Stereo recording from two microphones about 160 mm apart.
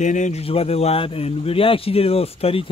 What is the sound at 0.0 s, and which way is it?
Speech, 50° left (ahead or behind).